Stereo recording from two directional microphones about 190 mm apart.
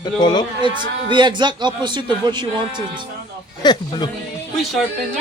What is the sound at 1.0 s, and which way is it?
Speech, 25° right (ahead or behind).